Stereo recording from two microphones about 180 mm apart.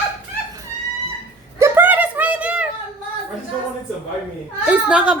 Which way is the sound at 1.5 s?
15° right (ahead or behind).